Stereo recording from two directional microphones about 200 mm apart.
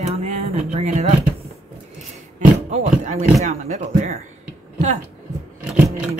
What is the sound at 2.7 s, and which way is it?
Speech, 35° right (ahead or behind).